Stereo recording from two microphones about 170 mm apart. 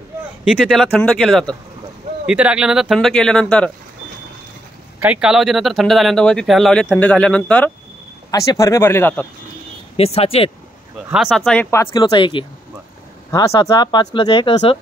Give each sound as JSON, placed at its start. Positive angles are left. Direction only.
{"t": 0.7, "sound": "speech", "side_deg": 0}
{"t": 2.2, "sound": "speech", "side_deg": -5}
{"t": 5.0, "sound": "speech", "side_deg": -5}
{"t": 8.3, "sound": "speech", "side_deg": 20}
{"t": 9.9, "sound": "speech", "side_deg": 35}
{"t": 11.1, "sound": "speech", "side_deg": 0}
{"t": 11.9, "sound": "speech", "side_deg": 25}